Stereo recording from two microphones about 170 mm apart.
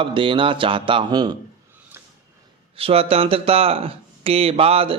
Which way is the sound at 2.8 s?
35° right (ahead or behind).